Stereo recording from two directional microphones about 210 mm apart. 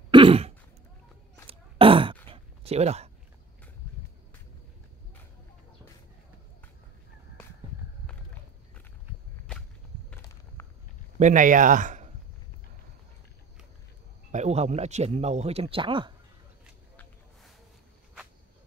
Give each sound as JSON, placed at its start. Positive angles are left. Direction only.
{"t": 0.1, "sound": "throat clearing", "side_deg": -25}
{"t": 1.5, "sound": "a sound", "side_deg": -25}
{"t": 9.5, "sound": "whip", "side_deg": 5}
{"t": 10.6, "sound": "walk", "side_deg": 10}
{"t": 11.1, "sound": "speech", "side_deg": -35}
{"t": 14.3, "sound": "speech", "side_deg": -30}
{"t": 16.9, "sound": "a sound", "side_deg": 5}